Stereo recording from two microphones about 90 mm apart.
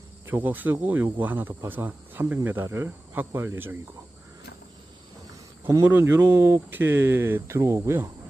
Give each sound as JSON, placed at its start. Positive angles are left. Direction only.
{"t": 0.3, "sound": "speech", "side_deg": -20}
{"t": 5.8, "sound": "speech", "side_deg": -20}